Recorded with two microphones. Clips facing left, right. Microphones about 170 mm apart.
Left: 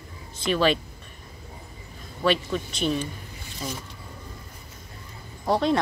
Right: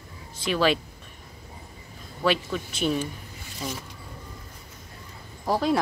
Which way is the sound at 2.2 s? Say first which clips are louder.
Left 1 dB; 5° right (ahead or behind).